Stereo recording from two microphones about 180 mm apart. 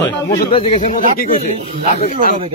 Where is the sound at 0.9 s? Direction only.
50° left (ahead or behind).